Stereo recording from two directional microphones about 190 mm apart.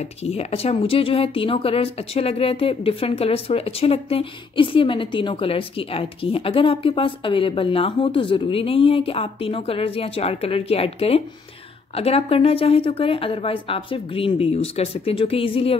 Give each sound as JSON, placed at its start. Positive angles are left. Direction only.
{"t": 0.2, "sound": "speech", "side_deg": 35}